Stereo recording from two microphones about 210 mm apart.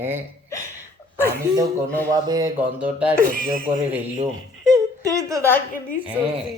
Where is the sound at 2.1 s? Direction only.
15° right (ahead or behind).